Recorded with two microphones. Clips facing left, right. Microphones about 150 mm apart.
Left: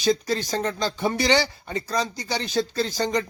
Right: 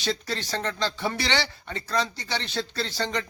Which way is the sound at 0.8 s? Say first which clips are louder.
Left 3 dB; 20° left (ahead or behind).